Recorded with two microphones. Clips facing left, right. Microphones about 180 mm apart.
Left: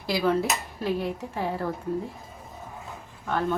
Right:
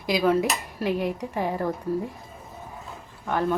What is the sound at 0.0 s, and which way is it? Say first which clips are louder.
A woman's voice: right 3 dB; 15° right (ahead or behind).